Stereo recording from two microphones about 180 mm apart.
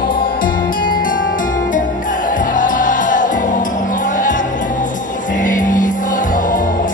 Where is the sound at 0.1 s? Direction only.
50° left (ahead or behind).